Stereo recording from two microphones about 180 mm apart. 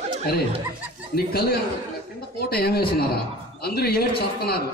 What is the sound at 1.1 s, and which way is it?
Speech, 60° left (ahead or behind).